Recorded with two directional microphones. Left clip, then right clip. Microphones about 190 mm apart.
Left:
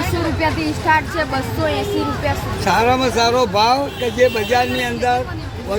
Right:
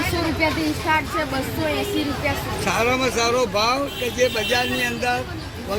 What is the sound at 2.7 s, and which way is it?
Speech, 45° left (ahead or behind).